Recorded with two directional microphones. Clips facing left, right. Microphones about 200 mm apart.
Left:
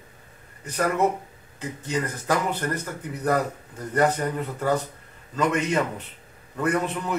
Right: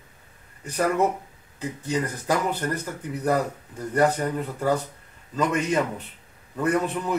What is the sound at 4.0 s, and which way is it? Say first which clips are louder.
Speech: right 1 dB; 10° right (ahead or behind).